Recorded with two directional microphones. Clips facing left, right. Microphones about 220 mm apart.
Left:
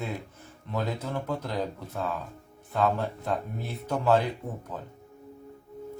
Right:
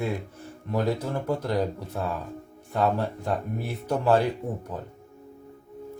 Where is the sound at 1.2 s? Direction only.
10° right (ahead or behind).